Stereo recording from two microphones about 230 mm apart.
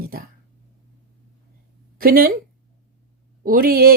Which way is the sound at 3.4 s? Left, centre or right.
Right.